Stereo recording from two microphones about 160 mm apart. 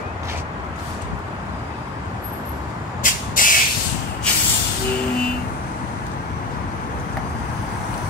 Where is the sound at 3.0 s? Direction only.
60° left (ahead or behind).